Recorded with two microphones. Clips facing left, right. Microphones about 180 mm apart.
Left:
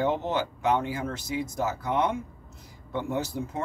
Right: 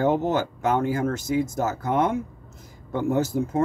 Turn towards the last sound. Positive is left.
turn(degrees=-45)  # may be behind; listen again after turning